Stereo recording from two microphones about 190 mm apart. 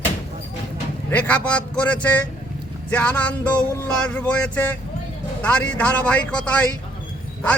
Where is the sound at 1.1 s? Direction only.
10° left (ahead or behind).